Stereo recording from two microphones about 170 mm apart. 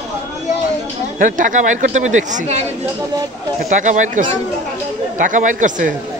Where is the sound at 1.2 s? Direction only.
50° right (ahead or behind).